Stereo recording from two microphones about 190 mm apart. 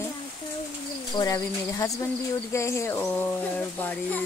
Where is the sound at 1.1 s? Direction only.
20° left (ahead or behind).